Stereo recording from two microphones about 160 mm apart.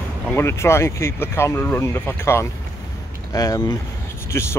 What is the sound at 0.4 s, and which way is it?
Speech, 15° left (ahead or behind).